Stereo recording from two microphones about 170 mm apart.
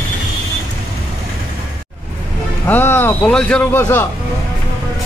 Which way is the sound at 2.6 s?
10° left (ahead or behind).